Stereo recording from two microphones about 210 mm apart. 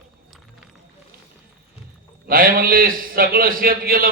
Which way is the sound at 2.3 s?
45° right (ahead or behind).